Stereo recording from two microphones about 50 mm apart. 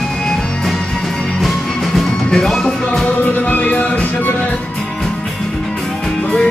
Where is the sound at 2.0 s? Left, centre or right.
Centre.